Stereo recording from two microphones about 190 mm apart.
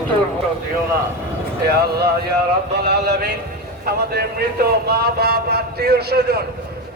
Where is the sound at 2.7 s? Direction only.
60° right (ahead or behind).